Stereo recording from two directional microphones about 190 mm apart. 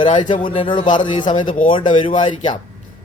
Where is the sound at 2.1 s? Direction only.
35° left (ahead or behind).